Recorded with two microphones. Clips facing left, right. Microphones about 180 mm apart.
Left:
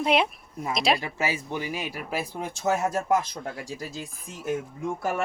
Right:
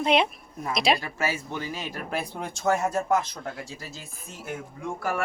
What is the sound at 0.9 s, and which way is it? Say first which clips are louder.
Speech: left 1 dB; 15° left (ahead or behind).